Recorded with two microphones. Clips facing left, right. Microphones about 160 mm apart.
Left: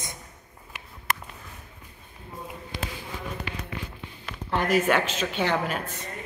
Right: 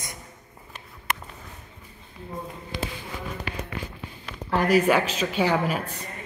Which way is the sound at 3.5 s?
40° right (ahead or behind).